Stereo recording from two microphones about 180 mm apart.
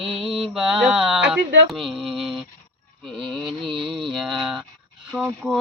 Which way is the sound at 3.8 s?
30° right (ahead or behind).